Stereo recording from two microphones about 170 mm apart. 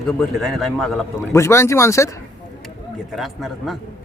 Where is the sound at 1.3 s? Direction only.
15° left (ahead or behind).